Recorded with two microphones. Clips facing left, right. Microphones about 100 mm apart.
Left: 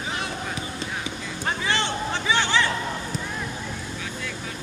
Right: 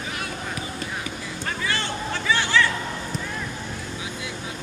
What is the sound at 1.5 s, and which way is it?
Vehicle, 25° left (ahead or behind).